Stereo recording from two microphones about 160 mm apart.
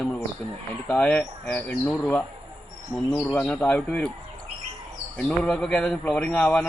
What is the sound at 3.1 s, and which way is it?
A man's voice, 5° left (ahead or behind).